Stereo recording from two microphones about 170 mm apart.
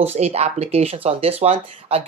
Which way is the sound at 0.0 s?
40° right (ahead or behind).